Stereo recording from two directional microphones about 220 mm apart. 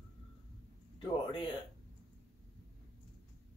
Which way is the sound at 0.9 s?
25° left (ahead or behind).